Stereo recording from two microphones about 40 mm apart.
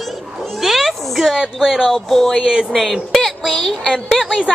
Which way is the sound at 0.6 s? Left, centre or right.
Centre.